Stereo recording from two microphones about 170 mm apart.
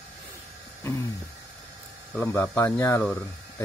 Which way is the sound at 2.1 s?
15° left (ahead or behind).